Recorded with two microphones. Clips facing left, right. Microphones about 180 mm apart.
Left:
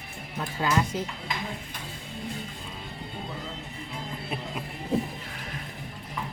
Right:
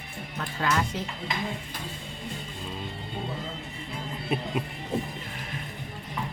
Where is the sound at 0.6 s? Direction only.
10° left (ahead or behind).